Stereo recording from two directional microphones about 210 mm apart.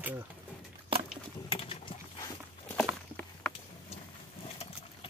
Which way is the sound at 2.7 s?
5° left (ahead or behind).